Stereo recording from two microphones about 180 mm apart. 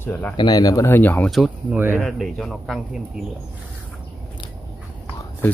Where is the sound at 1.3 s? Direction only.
5° right (ahead or behind).